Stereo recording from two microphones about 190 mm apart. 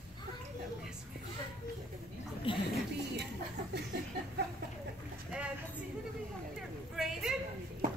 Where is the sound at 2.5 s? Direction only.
25° left (ahead or behind).